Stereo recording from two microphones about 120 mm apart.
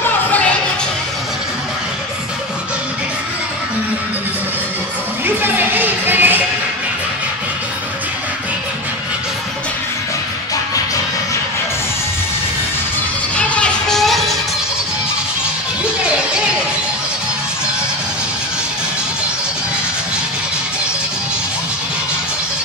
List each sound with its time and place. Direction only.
0.3 s music: 10° left (ahead or behind)
5.2 s music: 15° right (ahead or behind)
13.4 s music: 10° left (ahead or behind)